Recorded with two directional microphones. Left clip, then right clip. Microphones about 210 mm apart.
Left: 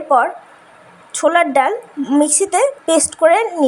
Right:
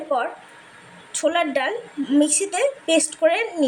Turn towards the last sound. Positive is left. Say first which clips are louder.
# left 7 dB
turn(degrees=20)  # may be behind; listen again after turning